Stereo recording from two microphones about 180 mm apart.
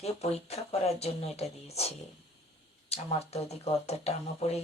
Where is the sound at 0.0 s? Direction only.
35° left (ahead or behind).